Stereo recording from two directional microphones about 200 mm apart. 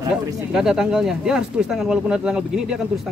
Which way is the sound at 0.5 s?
5° right (ahead or behind).